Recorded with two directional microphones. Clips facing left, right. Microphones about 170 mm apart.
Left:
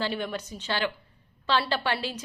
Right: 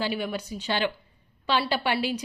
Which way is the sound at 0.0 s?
5° right (ahead or behind).